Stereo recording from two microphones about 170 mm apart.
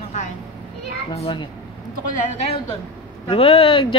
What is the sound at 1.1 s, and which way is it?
A woman's voice, 30° left (ahead or behind).